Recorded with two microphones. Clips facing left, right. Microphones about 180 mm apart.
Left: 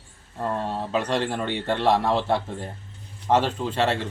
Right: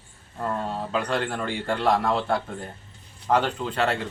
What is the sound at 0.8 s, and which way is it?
Speech, 25° left (ahead or behind).